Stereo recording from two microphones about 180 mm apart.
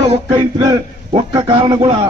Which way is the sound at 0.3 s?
20° right (ahead or behind).